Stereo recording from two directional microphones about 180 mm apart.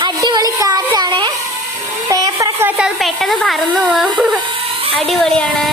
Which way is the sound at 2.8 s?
Centre (ahead or behind).